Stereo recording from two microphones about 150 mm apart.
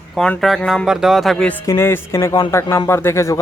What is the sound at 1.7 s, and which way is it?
Speech, 15° left (ahead or behind).